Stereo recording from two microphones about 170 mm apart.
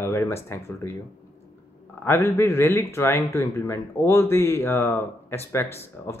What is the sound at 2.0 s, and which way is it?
Speech, 15° left (ahead or behind).